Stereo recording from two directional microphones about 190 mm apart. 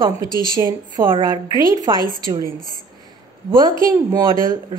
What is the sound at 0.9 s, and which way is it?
A woman's voice, 25° right (ahead or behind).